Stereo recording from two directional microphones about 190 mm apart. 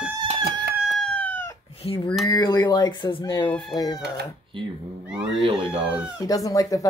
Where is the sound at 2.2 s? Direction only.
20° left (ahead or behind).